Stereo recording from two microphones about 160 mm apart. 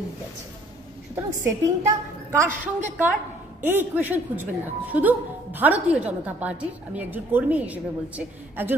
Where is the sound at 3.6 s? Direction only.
10° right (ahead or behind).